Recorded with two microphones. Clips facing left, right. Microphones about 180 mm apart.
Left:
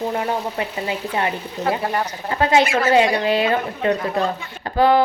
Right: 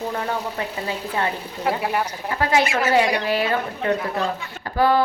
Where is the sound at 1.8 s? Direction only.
5° right (ahead or behind).